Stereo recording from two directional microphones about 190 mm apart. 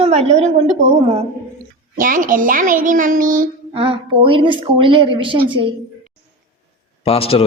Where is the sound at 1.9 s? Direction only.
45° right (ahead or behind).